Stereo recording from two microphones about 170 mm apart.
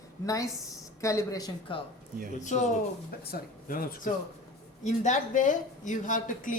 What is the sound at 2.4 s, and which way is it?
Speech, 45° left (ahead or behind).